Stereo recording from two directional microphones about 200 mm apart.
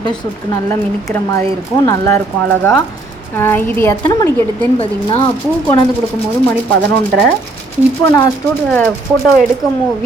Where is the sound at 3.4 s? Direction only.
10° left (ahead or behind).